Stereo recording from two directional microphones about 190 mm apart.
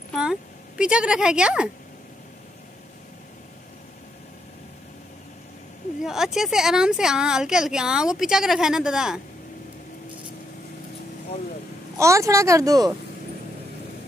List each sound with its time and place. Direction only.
0.1 s speech: 5° right (ahead or behind)
6.0 s a woman's voice: centre (ahead or behind)
12.0 s speech: 15° right (ahead or behind)